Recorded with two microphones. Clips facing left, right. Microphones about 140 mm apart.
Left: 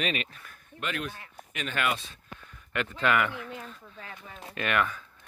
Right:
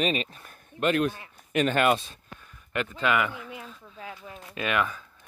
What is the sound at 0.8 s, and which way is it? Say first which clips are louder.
Speech: right 10 dB; 45° right (ahead or behind).